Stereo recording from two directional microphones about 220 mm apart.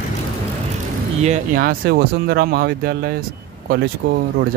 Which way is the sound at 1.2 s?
35° right (ahead or behind).